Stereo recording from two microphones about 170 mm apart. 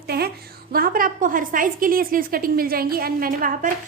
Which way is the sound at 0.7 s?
55° right (ahead or behind).